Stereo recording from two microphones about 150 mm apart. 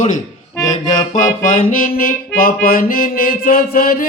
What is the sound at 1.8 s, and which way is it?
Music, 70° left (ahead or behind).